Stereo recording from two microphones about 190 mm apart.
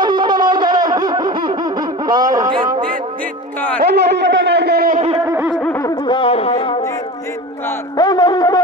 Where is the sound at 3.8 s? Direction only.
60° right (ahead or behind).